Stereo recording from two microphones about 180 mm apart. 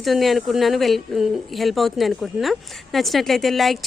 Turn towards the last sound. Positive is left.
turn(degrees=0)  # may be behind; listen again after turning